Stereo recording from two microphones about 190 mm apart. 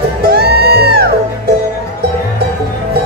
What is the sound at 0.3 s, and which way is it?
Music, 55° right (ahead or behind).